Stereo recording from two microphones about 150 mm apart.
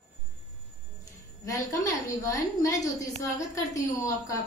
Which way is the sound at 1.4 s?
20° left (ahead or behind).